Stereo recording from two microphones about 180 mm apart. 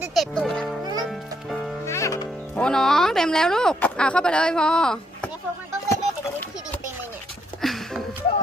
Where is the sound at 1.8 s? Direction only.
15° left (ahead or behind).